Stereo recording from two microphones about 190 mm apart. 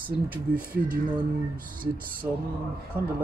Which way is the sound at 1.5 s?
50° right (ahead or behind).